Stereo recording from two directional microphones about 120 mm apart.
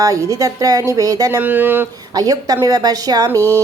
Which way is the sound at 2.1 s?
30° right (ahead or behind).